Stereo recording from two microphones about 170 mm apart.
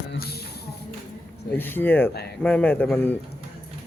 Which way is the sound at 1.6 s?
10° left (ahead or behind).